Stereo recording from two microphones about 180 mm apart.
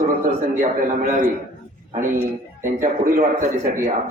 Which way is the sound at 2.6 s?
45° right (ahead or behind).